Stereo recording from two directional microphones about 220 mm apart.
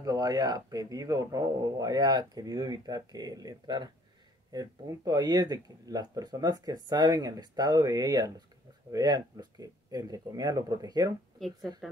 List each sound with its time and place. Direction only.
0.0 s a man's voice: 15° right (ahead or behind)
11.3 s speech: centre (ahead or behind)